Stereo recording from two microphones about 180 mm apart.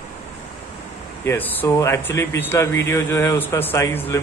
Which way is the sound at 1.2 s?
10° left (ahead or behind).